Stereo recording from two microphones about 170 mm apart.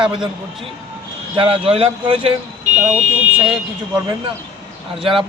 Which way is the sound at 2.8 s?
5° right (ahead or behind).